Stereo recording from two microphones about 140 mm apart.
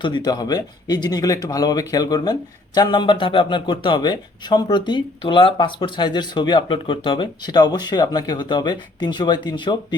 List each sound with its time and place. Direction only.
0.0 s speech: 30° left (ahead or behind)